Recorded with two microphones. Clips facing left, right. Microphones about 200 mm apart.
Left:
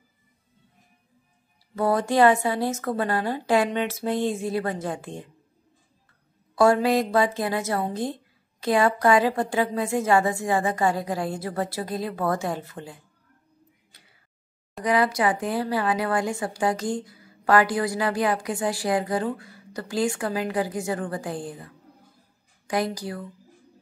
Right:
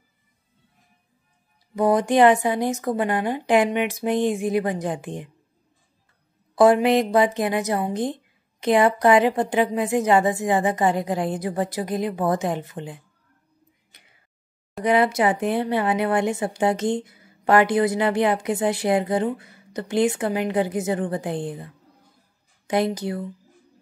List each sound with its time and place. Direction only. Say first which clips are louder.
1.8 s a woman's voice: right 3 dB; 15° right (ahead or behind)
6.5 s a woman's voice: right 3 dB; 20° right (ahead or behind)
14.9 s a woman's voice: right 3 dB; 25° right (ahead or behind)